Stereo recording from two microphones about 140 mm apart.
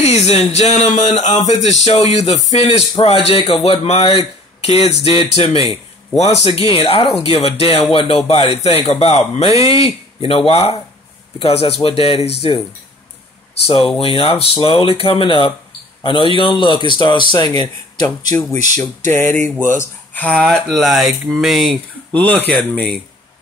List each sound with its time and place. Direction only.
0.0 s speech: 50° left (ahead or behind)
0.9 s a sound: 60° left (ahead or behind)
1.5 s speech: 50° left (ahead or behind)
13.7 s speech: 40° left (ahead or behind); by 22.9 s 10° left (ahead or behind)